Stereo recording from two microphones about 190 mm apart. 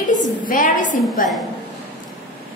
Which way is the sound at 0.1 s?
45° left (ahead or behind).